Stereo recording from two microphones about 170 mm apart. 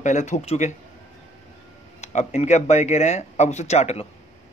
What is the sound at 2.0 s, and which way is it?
Speech, 40° left (ahead or behind).